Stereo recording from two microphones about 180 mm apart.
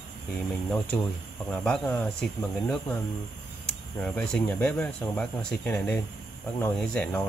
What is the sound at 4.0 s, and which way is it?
Speech, 5° left (ahead or behind).